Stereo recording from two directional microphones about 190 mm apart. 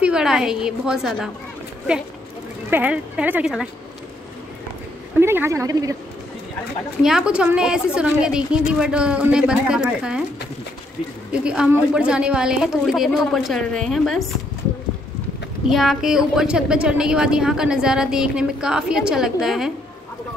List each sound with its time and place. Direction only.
0.0 s a woman's voice: 5° right (ahead or behind)
2.7 s speech: 5° right (ahead or behind)
5.2 s speech: 10° right (ahead or behind)
7.0 s a woman's voice: 5° right (ahead or behind)
11.3 s a woman's voice: 5° right (ahead or behind)
15.7 s a woman's voice: centre (ahead or behind)